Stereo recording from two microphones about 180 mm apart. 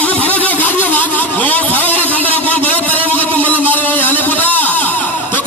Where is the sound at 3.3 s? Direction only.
10° left (ahead or behind).